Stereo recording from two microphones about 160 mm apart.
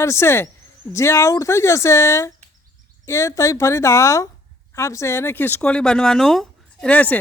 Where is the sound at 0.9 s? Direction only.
15° left (ahead or behind).